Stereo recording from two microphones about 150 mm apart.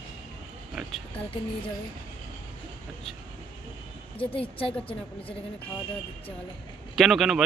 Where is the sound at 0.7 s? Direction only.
5° right (ahead or behind).